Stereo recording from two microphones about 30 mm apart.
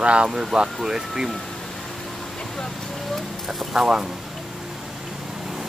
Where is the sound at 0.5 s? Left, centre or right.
Centre.